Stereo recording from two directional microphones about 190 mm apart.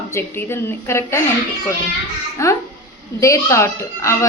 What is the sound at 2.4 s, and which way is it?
A child's voice, 15° left (ahead or behind).